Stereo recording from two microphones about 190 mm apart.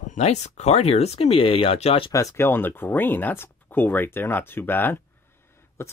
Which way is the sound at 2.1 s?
15° left (ahead or behind).